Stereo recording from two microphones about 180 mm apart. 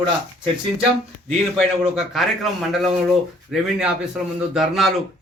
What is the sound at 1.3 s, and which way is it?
Speech, centre (ahead or behind).